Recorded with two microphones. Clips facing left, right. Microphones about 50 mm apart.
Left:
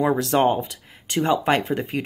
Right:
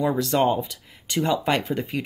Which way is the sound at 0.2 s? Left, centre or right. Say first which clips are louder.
Left 2 dB; left.